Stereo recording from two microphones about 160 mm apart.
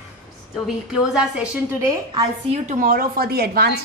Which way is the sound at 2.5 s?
50° right (ahead or behind).